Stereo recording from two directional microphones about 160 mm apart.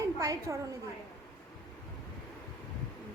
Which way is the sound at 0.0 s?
20° right (ahead or behind).